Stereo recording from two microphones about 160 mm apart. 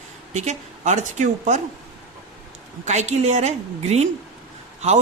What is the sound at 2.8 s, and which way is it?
A woman's voice, 45° right (ahead or behind).